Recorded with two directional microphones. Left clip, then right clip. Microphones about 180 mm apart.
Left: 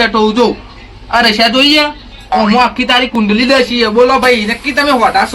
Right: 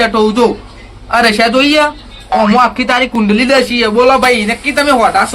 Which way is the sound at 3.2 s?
25° right (ahead or behind).